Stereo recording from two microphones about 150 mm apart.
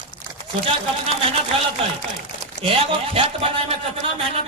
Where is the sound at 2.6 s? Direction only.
40° right (ahead or behind).